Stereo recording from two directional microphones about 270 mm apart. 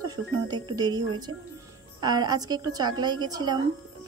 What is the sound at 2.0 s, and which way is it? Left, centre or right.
A woman's voice, centre.